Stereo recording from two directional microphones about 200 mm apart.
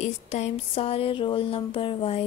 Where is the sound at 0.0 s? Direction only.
35° left (ahead or behind).